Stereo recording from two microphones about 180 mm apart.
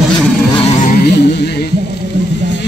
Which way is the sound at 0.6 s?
45° left (ahead or behind).